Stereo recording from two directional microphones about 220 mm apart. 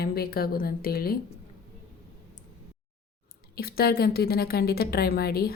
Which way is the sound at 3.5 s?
45° left (ahead or behind).